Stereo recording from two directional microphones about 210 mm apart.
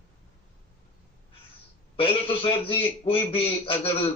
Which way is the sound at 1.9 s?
25° left (ahead or behind).